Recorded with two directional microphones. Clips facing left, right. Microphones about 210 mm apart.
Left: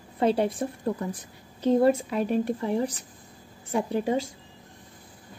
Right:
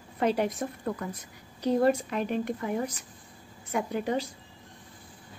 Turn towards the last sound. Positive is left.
turn(degrees=30)  # may be behind; listen again after turning